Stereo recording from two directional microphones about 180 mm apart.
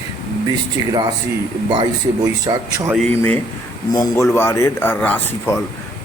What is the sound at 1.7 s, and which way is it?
Speech, 25° right (ahead or behind).